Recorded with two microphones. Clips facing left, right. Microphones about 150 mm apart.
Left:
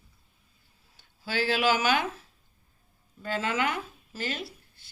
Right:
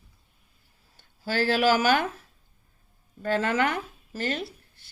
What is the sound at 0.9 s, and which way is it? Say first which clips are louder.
Speech: right 3 dB; 50° right (ahead or behind).